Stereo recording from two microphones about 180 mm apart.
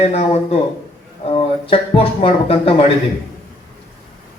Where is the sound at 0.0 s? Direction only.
35° left (ahead or behind).